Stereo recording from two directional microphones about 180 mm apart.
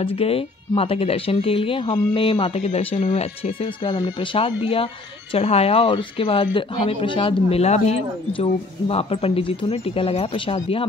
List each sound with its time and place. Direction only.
0.0 s speech: 30° left (ahead or behind)